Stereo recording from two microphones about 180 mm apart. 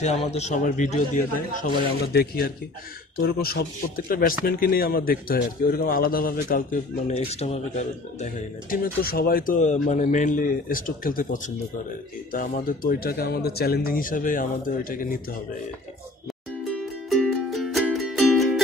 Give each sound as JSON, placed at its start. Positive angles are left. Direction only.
{"t": 0.3, "sound": "a man's voice", "side_deg": 40}
{"t": 2.1, "sound": "speech", "side_deg": 60}
{"t": 8.2, "sound": "speech", "side_deg": 50}
{"t": 16.7, "sound": "music", "side_deg": 0}